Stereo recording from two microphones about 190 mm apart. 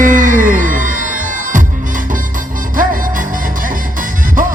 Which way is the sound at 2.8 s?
45° right (ahead or behind).